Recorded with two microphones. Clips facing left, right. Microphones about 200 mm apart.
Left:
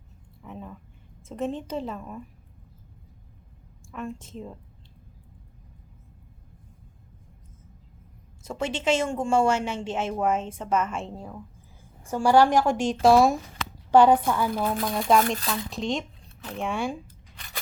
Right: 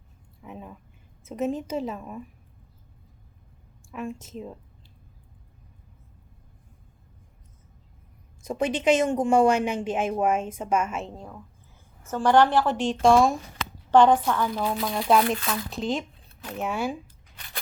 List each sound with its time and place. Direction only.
0.4 s a sound: 5° right (ahead or behind)
1.2 s a woman's voice: 5° right (ahead or behind)
3.9 s a woman's voice: 10° right (ahead or behind)
8.4 s a woman's voice: 15° right (ahead or behind); by 14.8 s 10° left (ahead or behind)
14.8 s a woman's voice: centre (ahead or behind)